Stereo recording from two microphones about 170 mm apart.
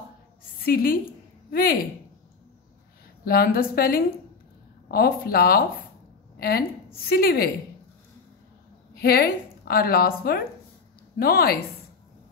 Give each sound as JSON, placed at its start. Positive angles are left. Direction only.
{"t": 0.6, "sound": "a woman's voice", "side_deg": 60}
{"t": 3.3, "sound": "a woman's voice", "side_deg": 60}
{"t": 9.0, "sound": "a woman's voice", "side_deg": 65}